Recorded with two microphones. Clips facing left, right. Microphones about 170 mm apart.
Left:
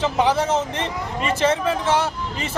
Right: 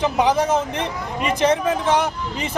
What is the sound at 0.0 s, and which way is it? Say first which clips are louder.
A man's voice: right 1 dB; 15° right (ahead or behind).